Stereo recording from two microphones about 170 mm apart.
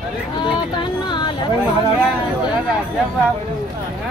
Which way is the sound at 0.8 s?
25° left (ahead or behind).